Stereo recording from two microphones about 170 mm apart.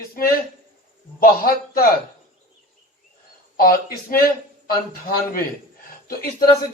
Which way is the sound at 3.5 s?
60° left (ahead or behind).